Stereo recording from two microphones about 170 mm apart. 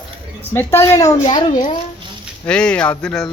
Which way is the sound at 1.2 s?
30° left (ahead or behind).